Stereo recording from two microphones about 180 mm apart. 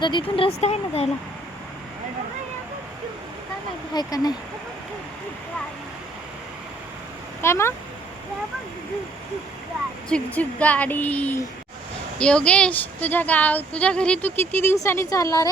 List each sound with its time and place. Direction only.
0.0 s speech: 25° left (ahead or behind)
3.9 s speech: 20° left (ahead or behind)
7.4 s speech: 15° left (ahead or behind)
10.1 s speech: 5° left (ahead or behind)